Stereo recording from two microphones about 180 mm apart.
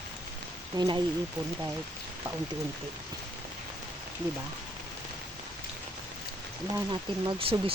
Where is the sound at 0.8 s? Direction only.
20° right (ahead or behind).